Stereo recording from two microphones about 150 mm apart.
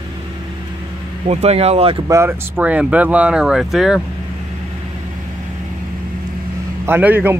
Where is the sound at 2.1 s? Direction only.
15° right (ahead or behind).